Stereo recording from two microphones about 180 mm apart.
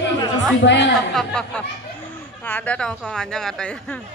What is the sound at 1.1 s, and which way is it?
Speech, 5° left (ahead or behind).